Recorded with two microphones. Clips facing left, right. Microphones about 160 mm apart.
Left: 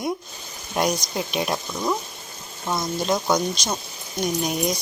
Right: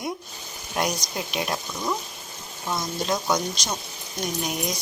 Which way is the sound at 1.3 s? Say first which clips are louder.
Left 2 dB; 15° left (ahead or behind).